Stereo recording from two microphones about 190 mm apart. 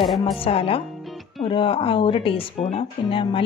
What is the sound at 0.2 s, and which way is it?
Speech, 30° left (ahead or behind).